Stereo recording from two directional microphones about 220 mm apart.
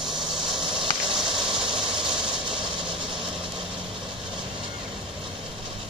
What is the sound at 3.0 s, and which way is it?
Vehicle, 20° right (ahead or behind).